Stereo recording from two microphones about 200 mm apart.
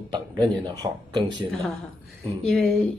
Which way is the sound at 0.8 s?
20° right (ahead or behind).